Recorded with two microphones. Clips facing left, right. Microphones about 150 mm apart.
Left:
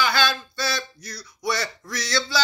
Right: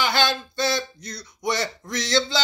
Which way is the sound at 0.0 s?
20° right (ahead or behind).